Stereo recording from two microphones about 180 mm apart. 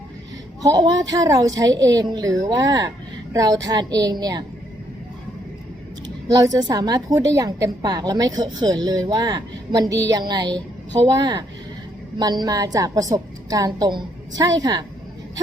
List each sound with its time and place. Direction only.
0.6 s a woman's voice: 20° right (ahead or behind)
6.2 s a woman's voice: 20° right (ahead or behind)